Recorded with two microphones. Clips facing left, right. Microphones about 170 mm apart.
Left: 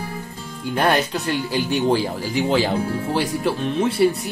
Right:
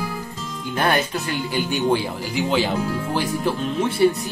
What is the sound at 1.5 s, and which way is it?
Speech, 35° left (ahead or behind).